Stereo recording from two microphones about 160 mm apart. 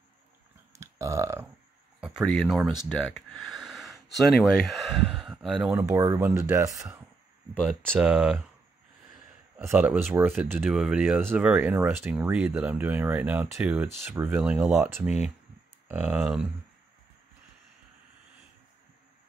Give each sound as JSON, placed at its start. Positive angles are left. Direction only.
{"t": 0.7, "sound": "burping", "side_deg": -20}
{"t": 2.0, "sound": "speech", "side_deg": -5}
{"t": 5.9, "sound": "speech", "side_deg": -20}
{"t": 7.5, "sound": "speech", "side_deg": 5}
{"t": 7.9, "sound": "speech", "side_deg": -5}
{"t": 9.7, "sound": "speech", "side_deg": -10}